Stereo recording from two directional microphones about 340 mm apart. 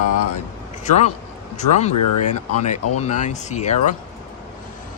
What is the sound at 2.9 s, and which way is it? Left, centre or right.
Speech, centre.